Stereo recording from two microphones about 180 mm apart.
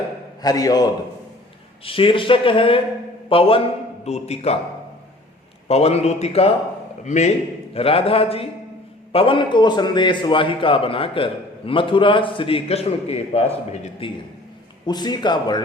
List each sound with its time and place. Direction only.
0.4 s a man's voice: 20° left (ahead or behind); by 4.5 s 35° left (ahead or behind)
5.6 s a man's voice: 35° left (ahead or behind)
14.8 s a man's voice: 20° left (ahead or behind)